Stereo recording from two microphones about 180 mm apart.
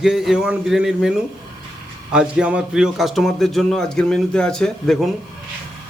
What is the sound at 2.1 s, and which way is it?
Speech, 5° right (ahead or behind).